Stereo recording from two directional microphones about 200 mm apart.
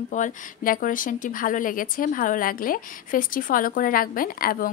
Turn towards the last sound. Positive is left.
turn(degrees=45)  # may be behind; listen again after turning